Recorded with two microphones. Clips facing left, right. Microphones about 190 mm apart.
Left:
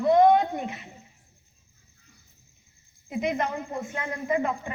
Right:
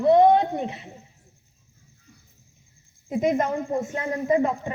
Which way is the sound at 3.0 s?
45° right (ahead or behind).